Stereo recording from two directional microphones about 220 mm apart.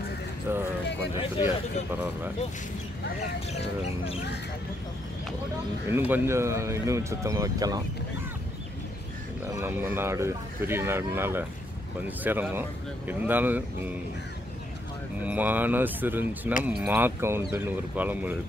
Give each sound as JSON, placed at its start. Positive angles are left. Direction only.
{"t": 0.5, "sound": "speech", "side_deg": -10}
{"t": 5.9, "sound": "speech", "side_deg": -10}
{"t": 9.5, "sound": "speech", "side_deg": -10}
{"t": 15.2, "sound": "speech", "side_deg": -10}